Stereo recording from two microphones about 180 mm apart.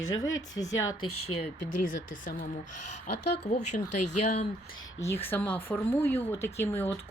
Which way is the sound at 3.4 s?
40° left (ahead or behind).